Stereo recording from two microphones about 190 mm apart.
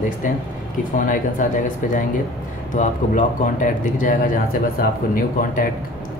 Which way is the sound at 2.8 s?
40° left (ahead or behind).